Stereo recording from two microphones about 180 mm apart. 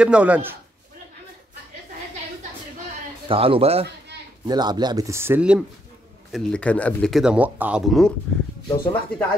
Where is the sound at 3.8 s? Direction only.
70° right (ahead or behind).